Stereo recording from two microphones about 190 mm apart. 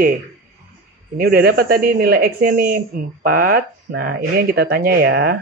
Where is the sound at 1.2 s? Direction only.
50° right (ahead or behind).